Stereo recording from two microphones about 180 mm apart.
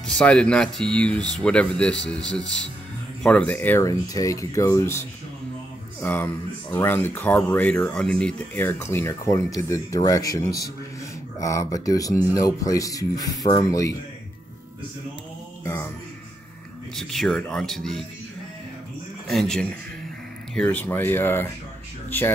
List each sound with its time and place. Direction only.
0.0 s speech: 5° left (ahead or behind)
15.6 s music: 15° left (ahead or behind)
16.9 s speech: centre (ahead or behind)
19.2 s speech: centre (ahead or behind)